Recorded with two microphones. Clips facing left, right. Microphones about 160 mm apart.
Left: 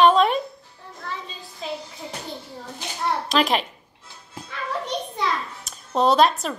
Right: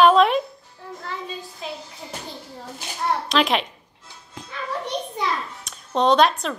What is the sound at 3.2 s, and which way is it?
Speech, centre (ahead or behind).